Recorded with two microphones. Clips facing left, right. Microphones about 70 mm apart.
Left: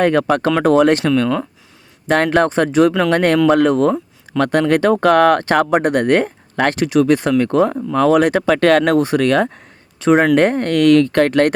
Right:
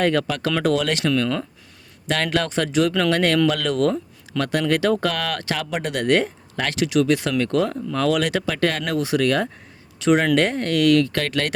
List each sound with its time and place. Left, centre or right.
0.0 s speech: left
4.3 s speech: left
8.4 s speech: left
10.0 s speech: left